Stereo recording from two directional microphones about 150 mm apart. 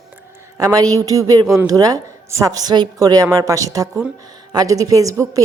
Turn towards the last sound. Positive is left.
turn(degrees=-20)  # may be behind; listen again after turning